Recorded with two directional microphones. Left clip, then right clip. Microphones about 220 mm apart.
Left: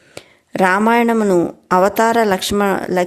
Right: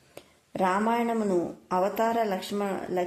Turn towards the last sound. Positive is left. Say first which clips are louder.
# left 13 dB
turn(degrees=45)  # may be behind; listen again after turning